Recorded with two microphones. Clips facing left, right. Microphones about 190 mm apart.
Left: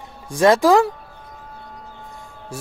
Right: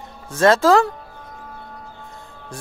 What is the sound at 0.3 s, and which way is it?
Speech, 15° left (ahead or behind).